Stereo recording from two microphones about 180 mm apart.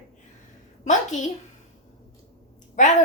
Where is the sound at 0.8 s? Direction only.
45° left (ahead or behind).